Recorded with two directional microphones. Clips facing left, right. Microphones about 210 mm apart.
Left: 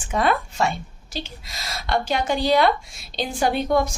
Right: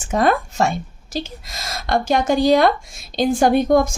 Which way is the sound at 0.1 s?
45° right (ahead or behind).